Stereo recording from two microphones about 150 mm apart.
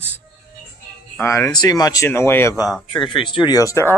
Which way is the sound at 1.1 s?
15° left (ahead or behind).